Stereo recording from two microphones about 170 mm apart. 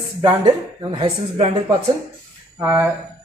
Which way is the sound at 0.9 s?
40° right (ahead or behind).